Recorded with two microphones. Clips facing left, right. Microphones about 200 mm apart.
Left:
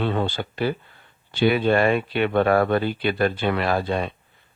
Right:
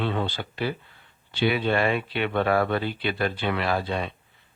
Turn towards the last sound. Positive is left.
turn(degrees=45)  # may be behind; listen again after turning